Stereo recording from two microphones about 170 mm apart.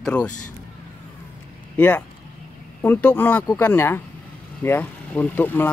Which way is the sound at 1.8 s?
10° left (ahead or behind).